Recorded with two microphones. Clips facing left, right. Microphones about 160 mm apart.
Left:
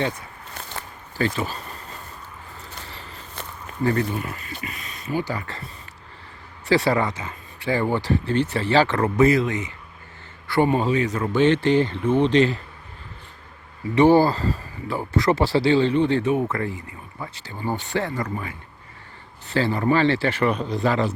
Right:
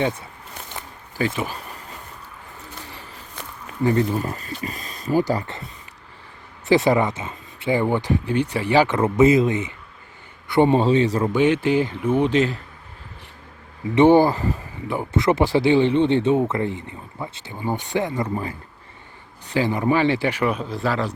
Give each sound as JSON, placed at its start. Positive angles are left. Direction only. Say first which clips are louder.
{"t": 0.5, "sound": "a sound", "louder": "left 1 dB", "side_deg": -15}
{"t": 3.7, "sound": "a sound", "louder": "right 2 dB", "side_deg": -10}
{"t": 4.1, "sound": "speech", "louder": "right 4 dB", "side_deg": -35}
{"t": 6.7, "sound": "speech", "louder": "right 3 dB", "side_deg": -20}
{"t": 11.3, "sound": "speech", "louder": "even", "side_deg": -10}
{"t": 13.9, "sound": "speech", "louder": "right 2 dB", "side_deg": -20}
{"t": 19.5, "sound": "speech", "louder": "even", "side_deg": -15}